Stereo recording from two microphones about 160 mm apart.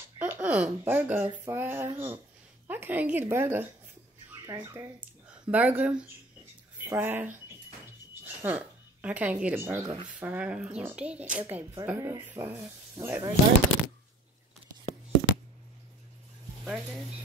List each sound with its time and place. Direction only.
0.2 s speech: 10° right (ahead or behind)
16.6 s speech: centre (ahead or behind)